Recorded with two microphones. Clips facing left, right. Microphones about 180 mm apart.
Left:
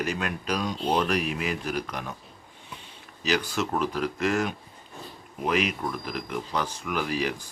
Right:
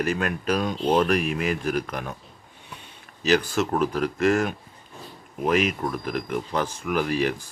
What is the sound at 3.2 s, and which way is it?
Speech, 50° right (ahead or behind).